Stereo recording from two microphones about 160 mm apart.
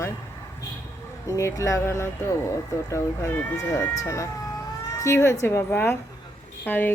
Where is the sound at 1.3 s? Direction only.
20° left (ahead or behind).